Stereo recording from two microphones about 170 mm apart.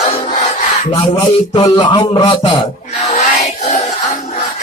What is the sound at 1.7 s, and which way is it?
Speech, 25° left (ahead or behind).